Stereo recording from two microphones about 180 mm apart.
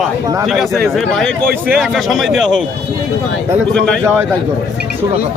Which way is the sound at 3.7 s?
5° left (ahead or behind).